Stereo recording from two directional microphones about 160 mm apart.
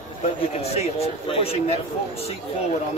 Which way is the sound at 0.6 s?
40° left (ahead or behind).